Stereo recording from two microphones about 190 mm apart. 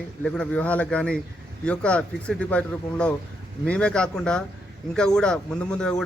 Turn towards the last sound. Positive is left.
turn(degrees=5)  # may be behind; listen again after turning